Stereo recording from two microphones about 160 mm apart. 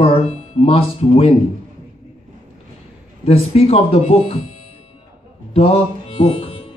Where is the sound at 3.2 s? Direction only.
40° left (ahead or behind).